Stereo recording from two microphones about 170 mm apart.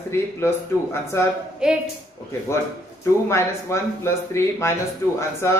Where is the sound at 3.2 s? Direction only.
15° left (ahead or behind).